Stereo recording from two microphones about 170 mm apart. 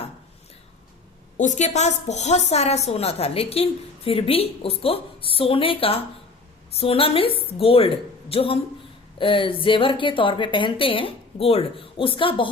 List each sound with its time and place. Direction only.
1.4 s a woman's voice: 45° left (ahead or behind)